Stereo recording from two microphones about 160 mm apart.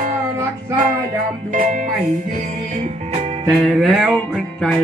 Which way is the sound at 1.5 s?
55° right (ahead or behind).